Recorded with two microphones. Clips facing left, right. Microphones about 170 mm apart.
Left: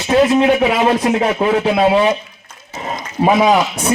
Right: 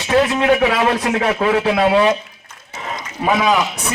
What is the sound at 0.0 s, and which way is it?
Speech, 25° left (ahead or behind).